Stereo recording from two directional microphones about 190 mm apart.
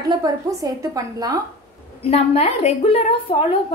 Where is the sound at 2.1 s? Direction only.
35° left (ahead or behind).